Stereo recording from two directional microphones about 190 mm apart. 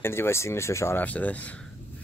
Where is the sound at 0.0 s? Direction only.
15° left (ahead or behind).